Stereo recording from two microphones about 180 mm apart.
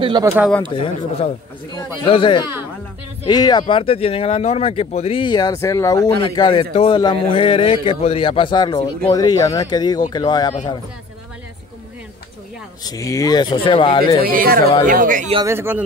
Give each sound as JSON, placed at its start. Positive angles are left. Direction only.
{"t": 0.0, "sound": "speech", "side_deg": -20}
{"t": 0.7, "sound": "speech", "side_deg": 30}
{"t": 12.8, "sound": "speech", "side_deg": 20}
{"t": 14.2, "sound": "speech", "side_deg": -55}
{"t": 15.4, "sound": "speech", "side_deg": -15}